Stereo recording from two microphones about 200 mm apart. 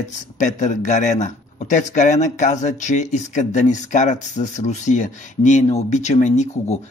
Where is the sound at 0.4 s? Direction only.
35° left (ahead or behind).